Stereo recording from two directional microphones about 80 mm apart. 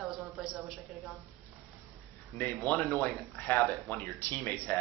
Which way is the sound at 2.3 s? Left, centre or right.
Left.